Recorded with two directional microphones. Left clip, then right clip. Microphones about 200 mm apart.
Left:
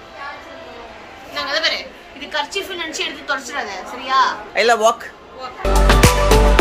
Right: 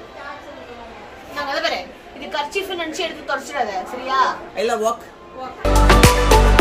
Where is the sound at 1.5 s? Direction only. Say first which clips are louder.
Left 3 dB; 55° right (ahead or behind).